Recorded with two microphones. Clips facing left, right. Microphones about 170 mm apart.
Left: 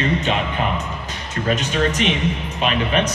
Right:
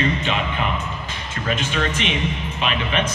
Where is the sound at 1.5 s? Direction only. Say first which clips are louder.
Left 3 dB; 40° left (ahead or behind).